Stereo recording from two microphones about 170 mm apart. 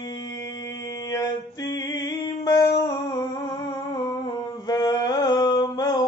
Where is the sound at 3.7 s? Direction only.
25° left (ahead or behind).